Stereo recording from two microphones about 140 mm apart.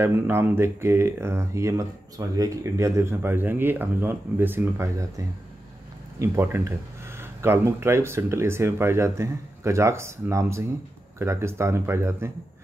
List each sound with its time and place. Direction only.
0.0 s speech: 15° right (ahead or behind)